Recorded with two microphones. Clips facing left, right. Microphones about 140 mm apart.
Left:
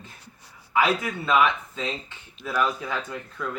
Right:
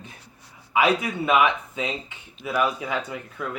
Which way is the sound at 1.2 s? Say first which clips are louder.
Right 1 dB; 15° right (ahead or behind).